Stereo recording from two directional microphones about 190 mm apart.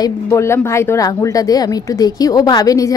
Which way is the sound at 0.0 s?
15° left (ahead or behind).